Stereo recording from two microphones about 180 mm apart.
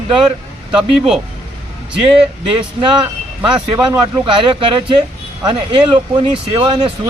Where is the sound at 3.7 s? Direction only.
25° right (ahead or behind).